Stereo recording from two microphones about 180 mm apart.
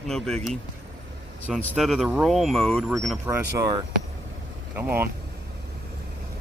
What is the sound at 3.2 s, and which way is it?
Speech, 15° right (ahead or behind).